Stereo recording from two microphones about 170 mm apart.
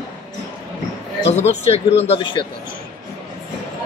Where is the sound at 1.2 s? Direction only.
40° left (ahead or behind).